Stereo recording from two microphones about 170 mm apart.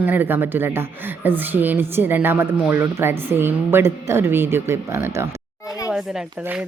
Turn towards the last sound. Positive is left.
turn(degrees=-5)  # may be behind; listen again after turning